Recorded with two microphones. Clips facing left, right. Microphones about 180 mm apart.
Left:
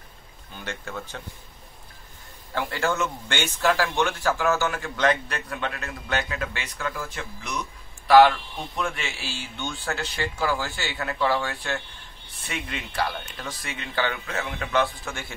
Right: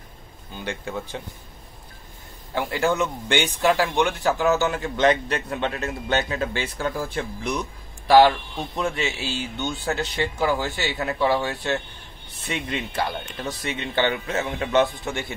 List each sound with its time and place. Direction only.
0.7 s speech: 15° right (ahead or behind)
2.5 s a man's voice: 15° right (ahead or behind)
8.7 s a man's voice: 25° right (ahead or behind)